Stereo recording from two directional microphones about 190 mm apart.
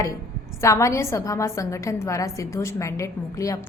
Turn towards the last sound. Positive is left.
turn(degrees=15)  # may be behind; listen again after turning